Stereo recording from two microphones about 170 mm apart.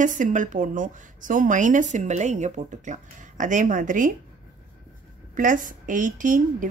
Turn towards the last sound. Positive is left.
turn(degrees=-50)  # may be behind; listen again after turning